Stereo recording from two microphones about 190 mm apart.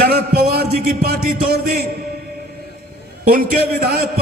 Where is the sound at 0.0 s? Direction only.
55° right (ahead or behind).